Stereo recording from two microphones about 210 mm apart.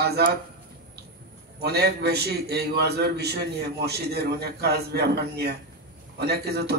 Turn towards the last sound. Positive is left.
turn(degrees=-50)  # may be behind; listen again after turning